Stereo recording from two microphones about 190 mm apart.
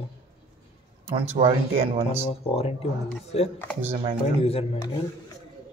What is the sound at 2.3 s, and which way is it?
Speech, 30° left (ahead or behind).